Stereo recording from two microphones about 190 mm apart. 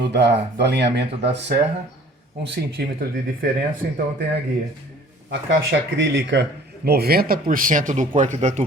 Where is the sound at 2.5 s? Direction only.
55° right (ahead or behind).